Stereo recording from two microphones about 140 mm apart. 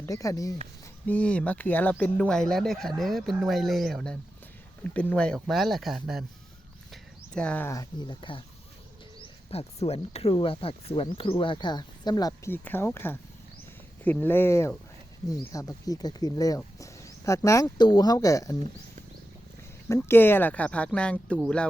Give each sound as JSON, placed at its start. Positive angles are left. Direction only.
{"t": 0.0, "sound": "speech", "side_deg": 25}
{"t": 1.0, "sound": "speech", "side_deg": 10}
{"t": 6.9, "sound": "a sound", "side_deg": 5}
{"t": 7.7, "sound": "speech", "side_deg": 25}
{"t": 12.5, "sound": "speech", "side_deg": 15}
{"t": 19.9, "sound": "speech", "side_deg": 15}